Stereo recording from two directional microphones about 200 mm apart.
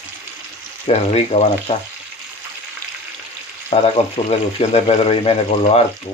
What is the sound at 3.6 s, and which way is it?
Speech, 30° left (ahead or behind).